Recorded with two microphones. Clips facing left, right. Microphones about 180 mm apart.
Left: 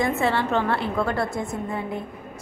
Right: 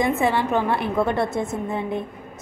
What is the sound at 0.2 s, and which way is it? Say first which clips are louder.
A woman's voice: right 2 dB; 15° right (ahead or behind).